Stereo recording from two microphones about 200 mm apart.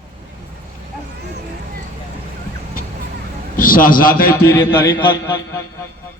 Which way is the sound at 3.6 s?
45° left (ahead or behind).